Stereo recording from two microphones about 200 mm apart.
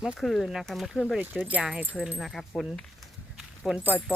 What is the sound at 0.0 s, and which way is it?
Speech, centre (ahead or behind).